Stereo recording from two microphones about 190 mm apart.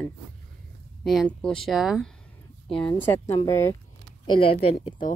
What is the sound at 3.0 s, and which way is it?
Speech, 15° left (ahead or behind).